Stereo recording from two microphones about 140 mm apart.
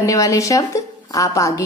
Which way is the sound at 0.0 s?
25° left (ahead or behind).